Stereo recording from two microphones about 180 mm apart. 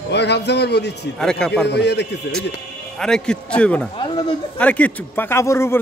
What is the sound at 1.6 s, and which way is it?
Speech, 70° left (ahead or behind).